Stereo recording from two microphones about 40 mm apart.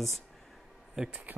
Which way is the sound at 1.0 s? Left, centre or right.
Centre.